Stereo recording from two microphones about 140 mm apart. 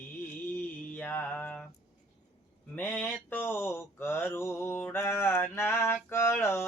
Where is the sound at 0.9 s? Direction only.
10° left (ahead or behind).